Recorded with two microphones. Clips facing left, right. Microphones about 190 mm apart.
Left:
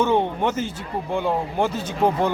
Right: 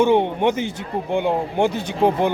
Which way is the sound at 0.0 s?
15° right (ahead or behind).